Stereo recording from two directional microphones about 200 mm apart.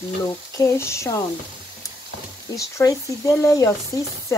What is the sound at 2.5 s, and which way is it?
Speech, 15° left (ahead or behind).